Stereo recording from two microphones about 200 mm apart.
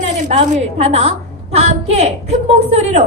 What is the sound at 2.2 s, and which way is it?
Speech, 30° right (ahead or behind).